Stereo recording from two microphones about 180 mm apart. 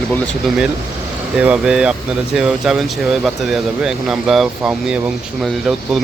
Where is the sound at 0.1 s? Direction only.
Centre (ahead or behind).